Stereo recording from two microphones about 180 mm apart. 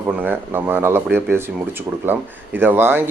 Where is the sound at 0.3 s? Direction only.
10° right (ahead or behind).